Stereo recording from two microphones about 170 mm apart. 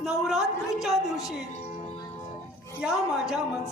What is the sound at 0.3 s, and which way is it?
Speech, centre (ahead or behind).